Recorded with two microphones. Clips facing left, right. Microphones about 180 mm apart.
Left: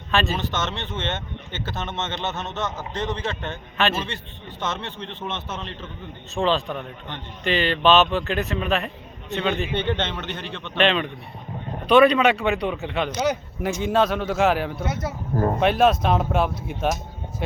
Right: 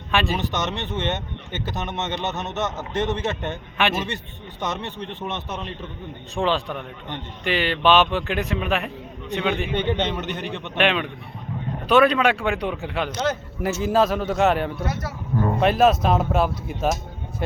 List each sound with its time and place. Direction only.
0.1 s speech: 15° right (ahead or behind); by 13.7 s 10° left (ahead or behind)
13.8 s speech: centre (ahead or behind)